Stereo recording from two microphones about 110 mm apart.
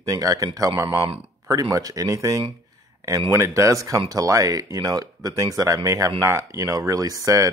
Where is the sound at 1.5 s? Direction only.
30° right (ahead or behind).